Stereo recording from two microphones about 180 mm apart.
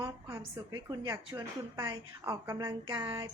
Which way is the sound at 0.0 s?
20° right (ahead or behind).